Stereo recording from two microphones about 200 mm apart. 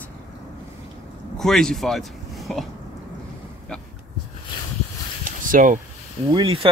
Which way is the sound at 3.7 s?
5° left (ahead or behind).